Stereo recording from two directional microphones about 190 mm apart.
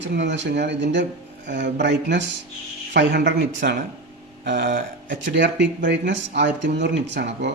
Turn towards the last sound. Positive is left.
turn(degrees=-65)  # may be behind; listen again after turning